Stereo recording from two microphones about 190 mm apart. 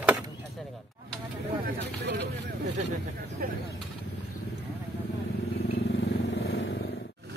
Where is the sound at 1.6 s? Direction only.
65° right (ahead or behind).